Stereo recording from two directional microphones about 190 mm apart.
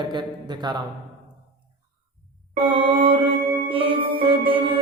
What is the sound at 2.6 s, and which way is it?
Music, 30° right (ahead or behind).